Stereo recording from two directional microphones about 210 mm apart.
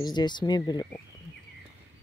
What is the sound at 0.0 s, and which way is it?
Speech, 20° left (ahead or behind).